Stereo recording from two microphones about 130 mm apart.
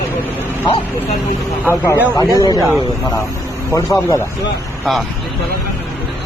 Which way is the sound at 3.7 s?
25° left (ahead or behind).